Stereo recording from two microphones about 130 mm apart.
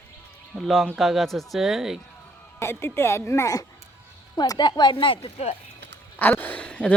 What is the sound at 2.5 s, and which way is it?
Speech, 20° left (ahead or behind).